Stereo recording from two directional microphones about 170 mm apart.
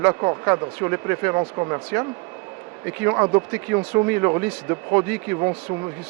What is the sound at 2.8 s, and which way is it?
Speech, 15° right (ahead or behind).